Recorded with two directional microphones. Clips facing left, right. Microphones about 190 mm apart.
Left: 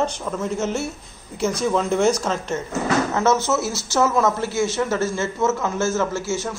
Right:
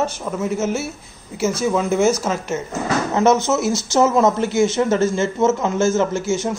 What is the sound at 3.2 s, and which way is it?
Speech, 15° right (ahead or behind).